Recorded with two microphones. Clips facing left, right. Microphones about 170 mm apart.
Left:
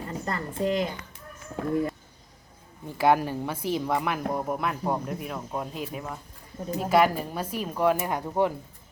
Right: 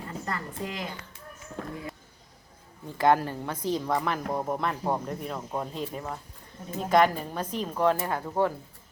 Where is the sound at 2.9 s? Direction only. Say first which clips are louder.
Left 1 dB; 10° left (ahead or behind).